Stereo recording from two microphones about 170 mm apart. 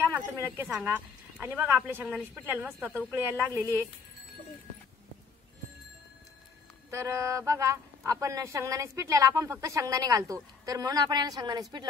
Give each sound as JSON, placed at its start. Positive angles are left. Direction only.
{"t": 0.0, "sound": "speech", "side_deg": -15}
{"t": 6.9, "sound": "a man's voice", "side_deg": -15}